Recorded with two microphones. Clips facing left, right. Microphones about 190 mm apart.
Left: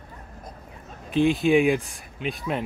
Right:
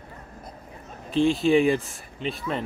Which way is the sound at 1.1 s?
15° left (ahead or behind).